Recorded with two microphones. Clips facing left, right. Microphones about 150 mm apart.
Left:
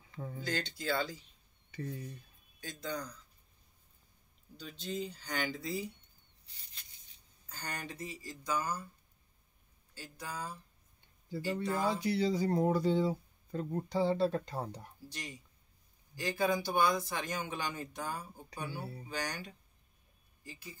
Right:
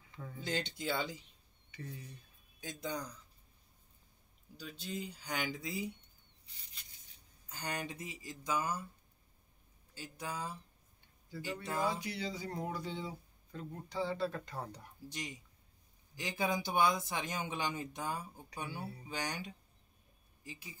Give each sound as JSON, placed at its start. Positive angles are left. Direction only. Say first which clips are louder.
{"t": 0.4, "sound": "speech", "louder": "even", "side_deg": -20}
{"t": 1.7, "sound": "speech", "louder": "left 6 dB", "side_deg": 40}
{"t": 2.6, "sound": "speech", "louder": "left 1 dB", "side_deg": -20}
{"t": 4.6, "sound": "speech", "louder": "left 3 dB", "side_deg": -10}
{"t": 7.4, "sound": "speech", "louder": "right 2 dB", "side_deg": -15}
{"t": 9.9, "sound": "speech", "louder": "right 1 dB", "side_deg": -20}
{"t": 11.8, "sound": "speech", "louder": "left 5 dB", "side_deg": 30}
{"t": 15.0, "sound": "speech", "louder": "right 3 dB", "side_deg": -20}